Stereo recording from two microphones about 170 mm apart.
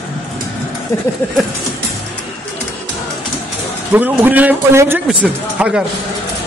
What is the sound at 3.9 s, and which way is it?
A man's voice, 10° right (ahead or behind).